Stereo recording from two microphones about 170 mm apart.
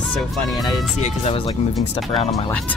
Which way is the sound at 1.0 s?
40° left (ahead or behind).